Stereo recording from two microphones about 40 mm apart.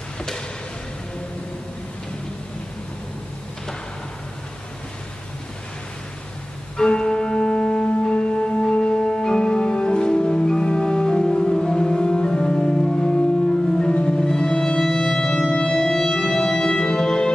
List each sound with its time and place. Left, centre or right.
6.8 s music: centre